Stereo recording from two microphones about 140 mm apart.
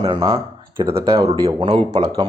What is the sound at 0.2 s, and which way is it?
Speech, 20° right (ahead or behind).